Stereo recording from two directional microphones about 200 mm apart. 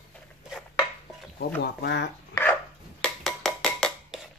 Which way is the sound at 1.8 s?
60° left (ahead or behind).